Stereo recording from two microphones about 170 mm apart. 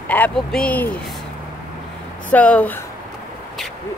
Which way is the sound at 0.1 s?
5° left (ahead or behind).